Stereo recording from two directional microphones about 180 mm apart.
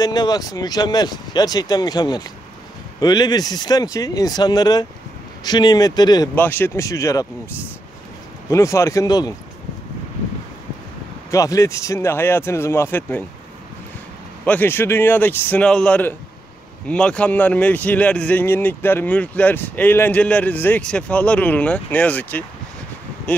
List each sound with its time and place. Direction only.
0.0 s speech: 20° left (ahead or behind)
6.3 s speech: 10° left (ahead or behind)
11.2 s speech: 15° left (ahead or behind)
14.4 s speech: 10° left (ahead or behind)